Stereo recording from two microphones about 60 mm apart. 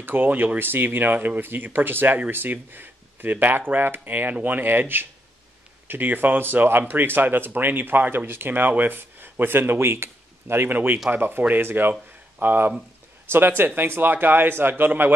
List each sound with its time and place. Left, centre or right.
0.0 s speech: right